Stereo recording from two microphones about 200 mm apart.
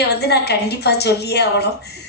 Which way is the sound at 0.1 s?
55° left (ahead or behind).